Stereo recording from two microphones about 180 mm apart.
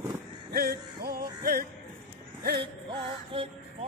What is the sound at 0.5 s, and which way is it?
Music, 55° right (ahead or behind).